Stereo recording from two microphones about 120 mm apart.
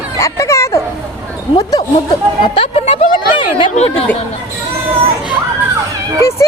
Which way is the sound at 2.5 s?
55° left (ahead or behind).